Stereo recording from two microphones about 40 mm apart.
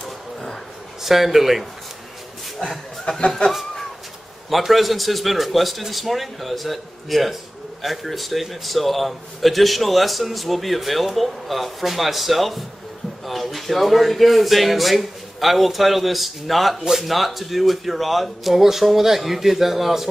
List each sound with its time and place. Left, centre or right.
1.0 s a man's voice: centre
3.3 s speech: left
4.5 s a man's voice: centre